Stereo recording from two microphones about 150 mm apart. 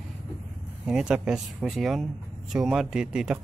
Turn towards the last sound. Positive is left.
turn(degrees=-5)  # may be behind; listen again after turning